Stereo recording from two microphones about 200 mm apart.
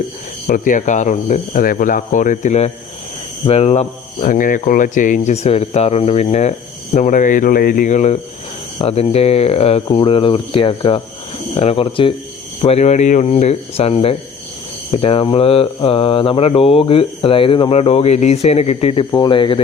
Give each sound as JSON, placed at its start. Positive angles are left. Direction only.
{"t": 0.4, "sound": "speech", "side_deg": 45}
{"t": 8.8, "sound": "mantra", "side_deg": 30}
{"t": 12.6, "sound": "speech", "side_deg": 30}
{"t": 14.9, "sound": "mantra", "side_deg": 30}